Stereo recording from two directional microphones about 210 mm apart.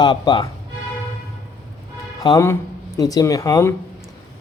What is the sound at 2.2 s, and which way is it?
Speech, 15° left (ahead or behind).